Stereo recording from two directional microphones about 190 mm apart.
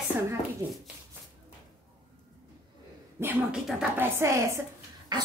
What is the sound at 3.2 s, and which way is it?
A woman's voice, 5° right (ahead or behind).